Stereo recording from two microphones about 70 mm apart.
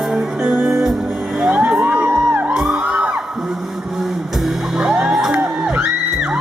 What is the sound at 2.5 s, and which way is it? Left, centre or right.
Music, centre.